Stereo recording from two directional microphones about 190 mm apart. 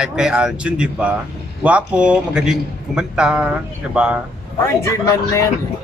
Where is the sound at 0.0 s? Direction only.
5° right (ahead or behind).